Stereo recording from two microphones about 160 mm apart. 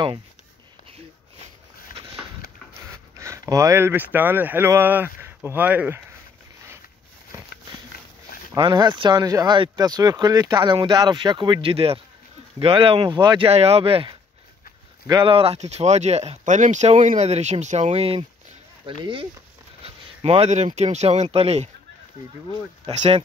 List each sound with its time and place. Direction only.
2.8 s speech: 20° right (ahead or behind)
8.5 s speech: 30° right (ahead or behind)
13.5 s speech: 40° right (ahead or behind)
22.8 s speech: 35° right (ahead or behind)